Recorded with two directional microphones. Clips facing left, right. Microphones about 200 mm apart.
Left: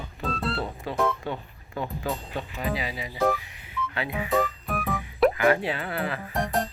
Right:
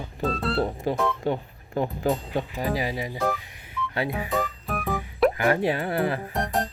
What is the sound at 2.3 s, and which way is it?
Speech, 40° right (ahead or behind).